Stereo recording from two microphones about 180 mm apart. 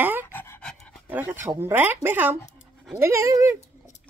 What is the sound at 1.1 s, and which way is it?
Speech, 10° right (ahead or behind).